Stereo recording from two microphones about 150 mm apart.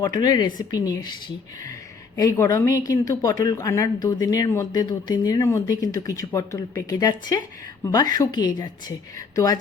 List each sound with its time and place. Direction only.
0.2 s speech: 30° left (ahead or behind)
2.1 s speech: 20° left (ahead or behind)